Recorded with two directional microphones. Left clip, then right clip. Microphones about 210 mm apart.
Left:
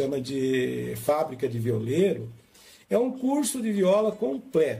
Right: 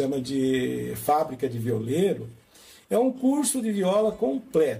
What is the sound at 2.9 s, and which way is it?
Speech, 15° left (ahead or behind).